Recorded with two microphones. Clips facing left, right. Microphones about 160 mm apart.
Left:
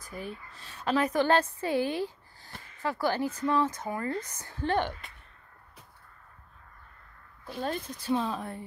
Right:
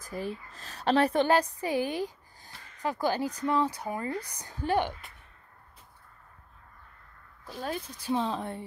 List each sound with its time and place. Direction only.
0.0 s speech: 35° right (ahead or behind)
1.2 s a woman's voice: 15° right (ahead or behind)
7.6 s a woman's voice: 10° right (ahead or behind)
8.2 s speech: 25° right (ahead or behind)